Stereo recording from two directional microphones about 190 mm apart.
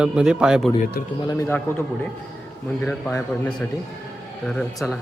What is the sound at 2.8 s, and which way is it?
A man's voice, 10° left (ahead or behind).